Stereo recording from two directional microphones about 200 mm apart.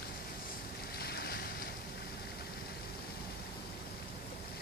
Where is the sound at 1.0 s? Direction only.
50° left (ahead or behind).